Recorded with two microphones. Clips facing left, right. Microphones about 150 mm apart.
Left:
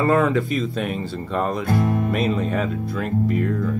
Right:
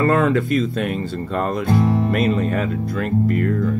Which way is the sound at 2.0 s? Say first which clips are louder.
Right 3 dB; centre (ahead or behind).